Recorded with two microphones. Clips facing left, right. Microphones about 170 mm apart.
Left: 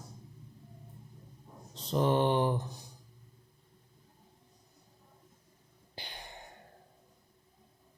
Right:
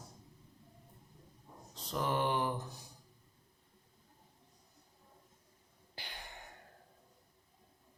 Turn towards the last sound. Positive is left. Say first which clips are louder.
# left 3 dB
turn(degrees=15)  # may be behind; listen again after turning